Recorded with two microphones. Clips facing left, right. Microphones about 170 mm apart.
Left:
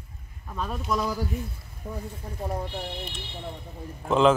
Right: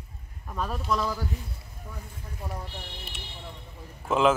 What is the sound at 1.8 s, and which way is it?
Speech, 45° left (ahead or behind).